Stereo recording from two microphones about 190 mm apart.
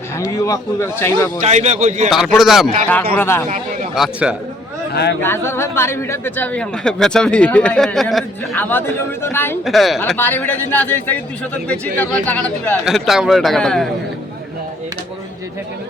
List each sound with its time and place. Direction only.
0.3 s speech: 15° left (ahead or behind)
1.4 s a man's voice: 35° right (ahead or behind)
2.0 s a man's voice: centre (ahead or behind)
3.9 s a man's voice: 5° right (ahead or behind)
5.2 s speech: 10° left (ahead or behind)
9.6 s a man's voice: centre (ahead or behind)
10.2 s speech: 10° left (ahead or behind)
12.2 s speech: 10° left (ahead or behind)
12.8 s a man's voice: centre (ahead or behind)